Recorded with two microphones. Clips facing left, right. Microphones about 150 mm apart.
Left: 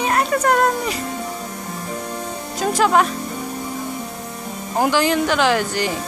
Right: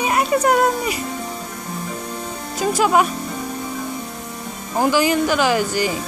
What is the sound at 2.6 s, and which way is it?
Speech, 5° right (ahead or behind).